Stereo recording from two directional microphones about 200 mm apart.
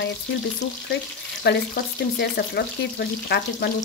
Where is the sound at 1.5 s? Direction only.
55° left (ahead or behind).